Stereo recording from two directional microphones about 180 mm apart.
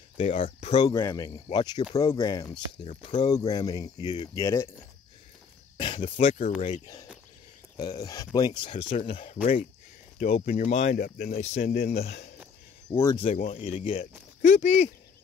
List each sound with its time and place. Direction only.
0.2 s speech: 30° left (ahead or behind)
0.7 s speech: 20° left (ahead or behind)
2.4 s speech: 30° left (ahead or behind); by 4.6 s 15° left (ahead or behind)
5.8 s a sound: 25° left (ahead or behind)
6.0 s speech: 45° left (ahead or behind)
7.7 s speech: 20° left (ahead or behind)
9.2 s speech: 40° left (ahead or behind)
11.0 s speech: 60° left (ahead or behind)
11.3 s speech: 40° left (ahead or behind)
12.0 s speech: 40° left (ahead or behind)
12.9 s speech: 15° left (ahead or behind)
13.4 s speech: 45° left (ahead or behind)
13.7 s speech: 35° left (ahead or behind)